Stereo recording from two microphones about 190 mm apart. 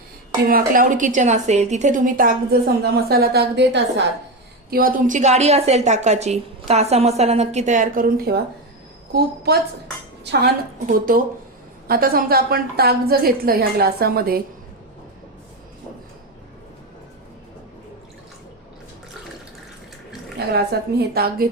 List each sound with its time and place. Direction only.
0.4 s a woman's voice: 50° right (ahead or behind); by 4.0 s 65° right (ahead or behind)
4.7 s a woman's voice: 50° right (ahead or behind)
20.7 s a woman's voice: 55° right (ahead or behind)